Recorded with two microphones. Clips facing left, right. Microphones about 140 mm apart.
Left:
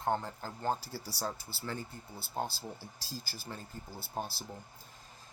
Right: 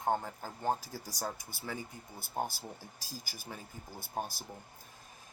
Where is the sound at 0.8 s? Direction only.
75° left (ahead or behind).